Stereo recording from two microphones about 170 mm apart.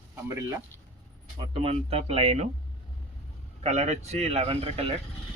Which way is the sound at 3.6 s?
40° right (ahead or behind).